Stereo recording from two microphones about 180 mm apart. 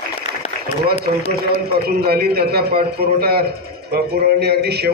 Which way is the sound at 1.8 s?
60° right (ahead or behind).